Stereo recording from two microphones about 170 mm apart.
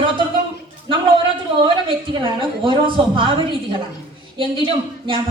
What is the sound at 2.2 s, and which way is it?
A woman's voice, 30° right (ahead or behind).